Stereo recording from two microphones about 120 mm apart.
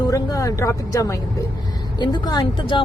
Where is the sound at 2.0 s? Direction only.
40° left (ahead or behind).